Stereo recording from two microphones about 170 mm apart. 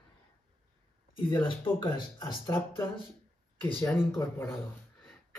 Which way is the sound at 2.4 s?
15° left (ahead or behind).